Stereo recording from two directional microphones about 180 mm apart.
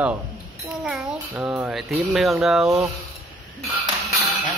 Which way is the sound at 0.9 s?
Centre (ahead or behind).